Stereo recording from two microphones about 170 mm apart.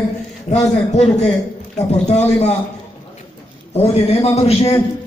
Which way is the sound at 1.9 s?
40° left (ahead or behind).